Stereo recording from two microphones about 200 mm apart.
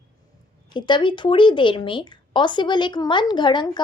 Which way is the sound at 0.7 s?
25° left (ahead or behind).